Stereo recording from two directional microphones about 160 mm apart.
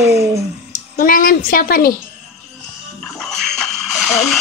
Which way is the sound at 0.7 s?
60° left (ahead or behind).